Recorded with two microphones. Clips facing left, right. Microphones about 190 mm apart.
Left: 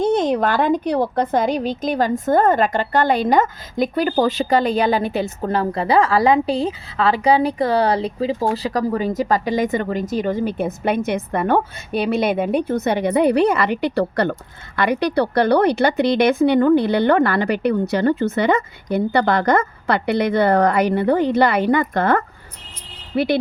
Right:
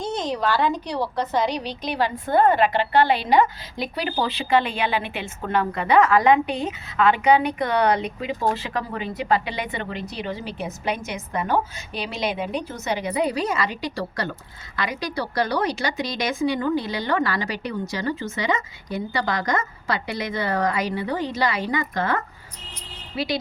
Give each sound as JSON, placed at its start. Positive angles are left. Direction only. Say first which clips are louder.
{"t": 0.0, "sound": "a woman's voice", "louder": "left 8 dB", "side_deg": 55}